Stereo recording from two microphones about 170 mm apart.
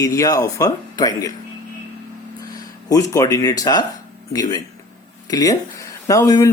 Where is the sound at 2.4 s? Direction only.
20° left (ahead or behind).